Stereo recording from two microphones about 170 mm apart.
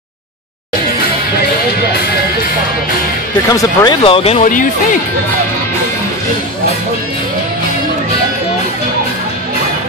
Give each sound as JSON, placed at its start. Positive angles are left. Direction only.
{"t": 3.4, "sound": "speech", "side_deg": 20}